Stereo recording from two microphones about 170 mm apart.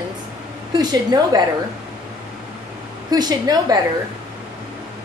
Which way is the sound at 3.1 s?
25° right (ahead or behind).